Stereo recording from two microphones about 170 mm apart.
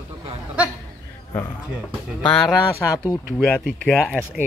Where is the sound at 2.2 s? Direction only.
Centre (ahead or behind).